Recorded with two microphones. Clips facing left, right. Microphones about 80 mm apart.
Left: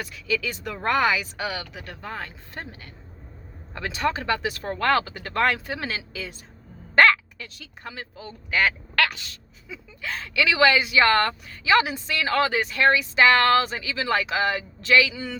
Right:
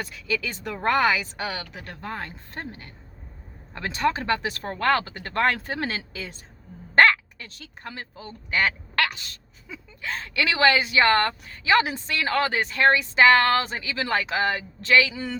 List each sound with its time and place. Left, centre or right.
0.0 s a woman's voice: right
6.9 s dog: right
8.1 s a woman's voice: right